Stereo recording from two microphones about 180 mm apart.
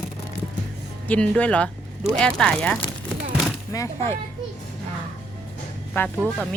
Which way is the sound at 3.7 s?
15° left (ahead or behind).